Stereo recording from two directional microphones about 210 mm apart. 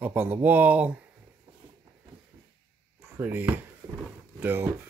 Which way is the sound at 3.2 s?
10° right (ahead or behind).